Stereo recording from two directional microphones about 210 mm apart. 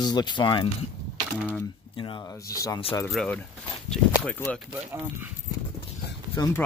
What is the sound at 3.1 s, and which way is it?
Speech, 5° left (ahead or behind).